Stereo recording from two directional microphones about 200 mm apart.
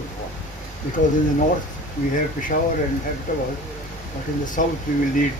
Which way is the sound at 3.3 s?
40° left (ahead or behind).